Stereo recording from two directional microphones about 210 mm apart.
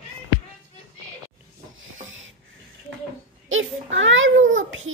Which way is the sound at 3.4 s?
65° right (ahead or behind).